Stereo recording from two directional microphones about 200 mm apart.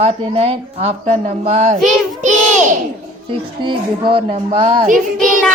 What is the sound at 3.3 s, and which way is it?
Speech, 25° right (ahead or behind).